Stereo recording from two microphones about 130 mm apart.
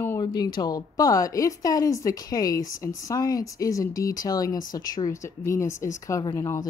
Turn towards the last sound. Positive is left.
turn(degrees=25)  # may be behind; listen again after turning